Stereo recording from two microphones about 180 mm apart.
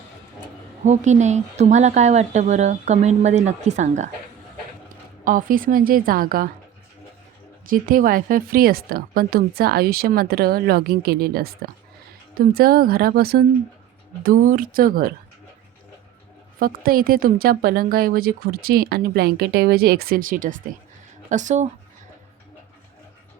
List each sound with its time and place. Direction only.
0.9 s a woman's voice: 40° right (ahead or behind)
5.2 s a woman's voice: 50° right (ahead or behind)
7.7 s a woman's voice: 50° right (ahead or behind)
16.6 s speech: 55° right (ahead or behind)